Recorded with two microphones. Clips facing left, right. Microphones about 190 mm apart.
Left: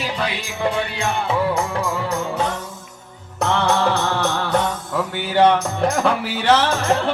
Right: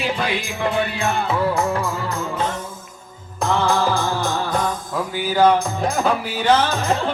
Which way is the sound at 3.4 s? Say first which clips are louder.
Even; 75° left (ahead or behind).